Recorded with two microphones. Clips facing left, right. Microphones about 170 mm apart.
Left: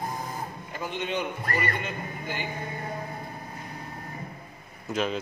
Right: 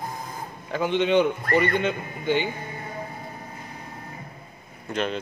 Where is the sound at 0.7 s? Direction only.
85° right.